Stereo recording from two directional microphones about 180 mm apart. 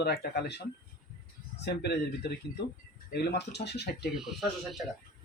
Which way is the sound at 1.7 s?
65° left (ahead or behind).